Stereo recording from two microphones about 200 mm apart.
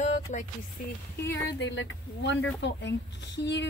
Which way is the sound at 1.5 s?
60° left (ahead or behind).